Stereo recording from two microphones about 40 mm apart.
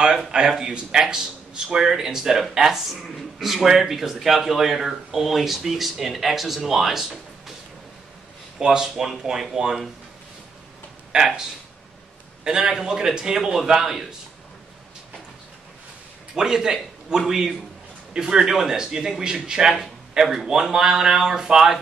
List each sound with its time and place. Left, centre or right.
0.3 s speech: centre
8.5 s speech: centre
11.1 s speech: centre
12.4 s speech: centre
13.4 s speech: centre
16.3 s a man's voice: centre